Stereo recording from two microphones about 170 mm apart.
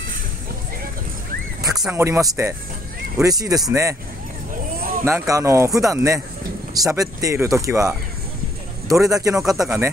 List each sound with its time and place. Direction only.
2.0 s speech: 15° right (ahead or behind)
5.0 s speech: 15° right (ahead or behind)